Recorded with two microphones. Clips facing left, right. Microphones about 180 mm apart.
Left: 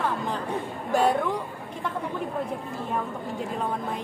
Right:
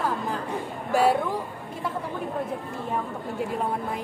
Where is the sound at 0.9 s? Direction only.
5° right (ahead or behind).